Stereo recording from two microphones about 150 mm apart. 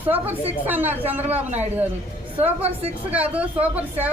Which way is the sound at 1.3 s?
50° right (ahead or behind).